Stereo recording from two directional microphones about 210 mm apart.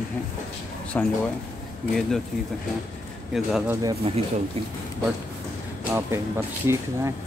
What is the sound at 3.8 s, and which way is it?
Speech, 25° right (ahead or behind).